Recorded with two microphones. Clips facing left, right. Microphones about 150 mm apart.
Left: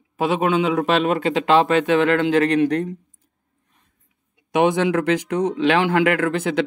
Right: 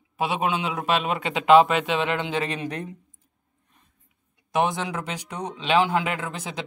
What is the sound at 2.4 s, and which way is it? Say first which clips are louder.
Speech: left 12 dB; 65° left (ahead or behind).